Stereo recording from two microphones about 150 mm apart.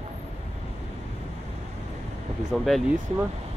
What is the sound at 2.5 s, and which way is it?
Speech, centre (ahead or behind).